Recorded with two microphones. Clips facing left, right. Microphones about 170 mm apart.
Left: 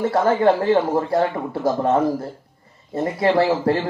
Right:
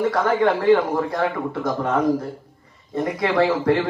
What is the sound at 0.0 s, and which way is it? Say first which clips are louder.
A man's voice: left 2 dB; 25° left (ahead or behind).